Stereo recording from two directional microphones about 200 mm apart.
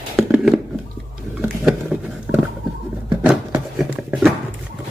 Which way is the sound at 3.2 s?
5° right (ahead or behind).